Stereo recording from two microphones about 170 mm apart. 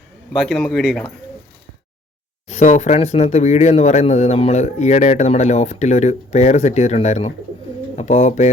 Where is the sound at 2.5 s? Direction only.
45° left (ahead or behind).